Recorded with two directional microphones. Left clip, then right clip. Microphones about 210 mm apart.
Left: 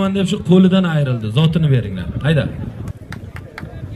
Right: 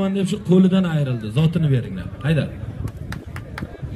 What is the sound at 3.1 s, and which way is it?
Run, 40° right (ahead or behind).